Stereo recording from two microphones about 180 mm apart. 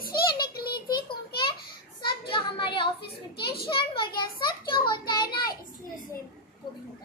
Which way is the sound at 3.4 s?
60° left (ahead or behind).